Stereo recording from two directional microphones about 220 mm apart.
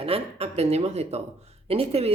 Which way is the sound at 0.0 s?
25° right (ahead or behind).